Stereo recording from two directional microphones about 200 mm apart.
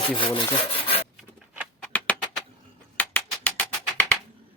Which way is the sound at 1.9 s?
5° left (ahead or behind).